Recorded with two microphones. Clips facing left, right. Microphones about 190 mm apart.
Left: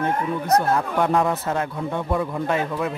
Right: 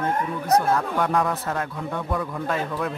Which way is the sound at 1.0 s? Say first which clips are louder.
Left 3 dB; 25° left (ahead or behind).